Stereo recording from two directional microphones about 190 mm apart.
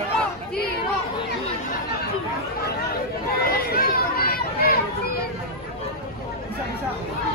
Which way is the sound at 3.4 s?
50° left (ahead or behind).